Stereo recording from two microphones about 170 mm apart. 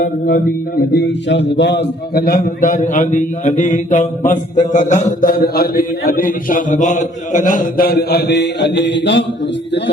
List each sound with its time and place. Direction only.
0.0 s speech: 55° left (ahead or behind); by 9.2 s 90° left